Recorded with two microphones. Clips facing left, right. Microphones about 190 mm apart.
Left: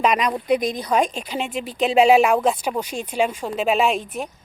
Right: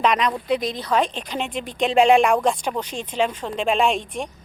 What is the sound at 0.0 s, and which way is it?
A woman's voice, 10° left (ahead or behind).